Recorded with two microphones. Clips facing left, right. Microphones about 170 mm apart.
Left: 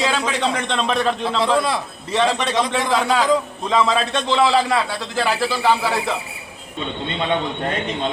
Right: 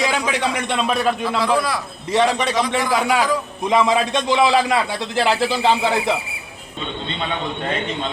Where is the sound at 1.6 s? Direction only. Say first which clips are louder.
Left 1 dB; 25° left (ahead or behind).